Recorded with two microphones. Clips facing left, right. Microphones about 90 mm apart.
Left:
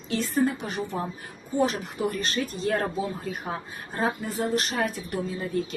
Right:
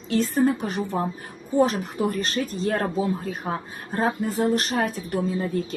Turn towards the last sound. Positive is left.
turn(degrees=-40)  # may be behind; listen again after turning